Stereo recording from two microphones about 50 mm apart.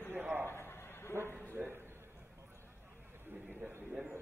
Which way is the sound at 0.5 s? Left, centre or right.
Left.